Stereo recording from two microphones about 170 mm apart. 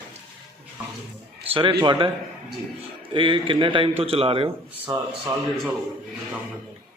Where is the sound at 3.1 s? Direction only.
30° right (ahead or behind).